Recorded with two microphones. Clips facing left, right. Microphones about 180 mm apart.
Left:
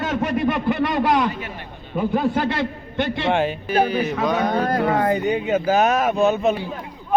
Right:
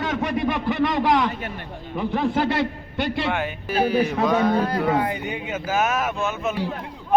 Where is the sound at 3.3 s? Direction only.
25° left (ahead or behind).